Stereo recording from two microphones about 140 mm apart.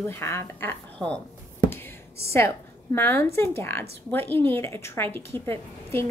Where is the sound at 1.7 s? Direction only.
20° left (ahead or behind).